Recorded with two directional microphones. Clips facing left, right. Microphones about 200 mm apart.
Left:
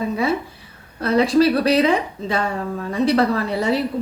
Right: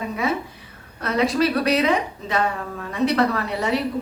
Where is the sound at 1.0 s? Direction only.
30° left (ahead or behind).